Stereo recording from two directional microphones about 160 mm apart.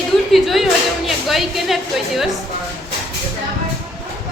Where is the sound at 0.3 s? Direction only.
Centre (ahead or behind).